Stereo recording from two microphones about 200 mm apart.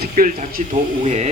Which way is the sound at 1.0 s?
35° right (ahead or behind).